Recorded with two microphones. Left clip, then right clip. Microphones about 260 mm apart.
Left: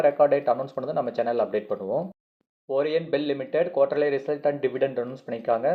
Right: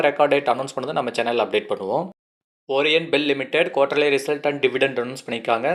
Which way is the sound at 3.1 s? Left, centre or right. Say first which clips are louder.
Right 5 dB; centre.